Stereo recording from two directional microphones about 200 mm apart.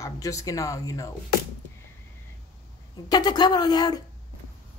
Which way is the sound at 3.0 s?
20° left (ahead or behind).